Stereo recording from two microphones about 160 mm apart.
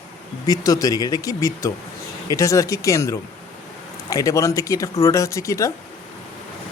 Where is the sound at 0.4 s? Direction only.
25° left (ahead or behind).